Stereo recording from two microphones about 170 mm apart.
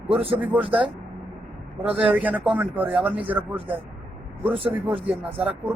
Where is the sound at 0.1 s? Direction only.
35° right (ahead or behind).